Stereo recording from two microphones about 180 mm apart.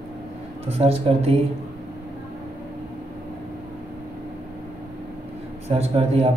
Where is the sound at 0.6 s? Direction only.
35° right (ahead or behind).